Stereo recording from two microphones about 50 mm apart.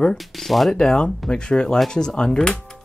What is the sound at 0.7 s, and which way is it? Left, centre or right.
Speech, centre.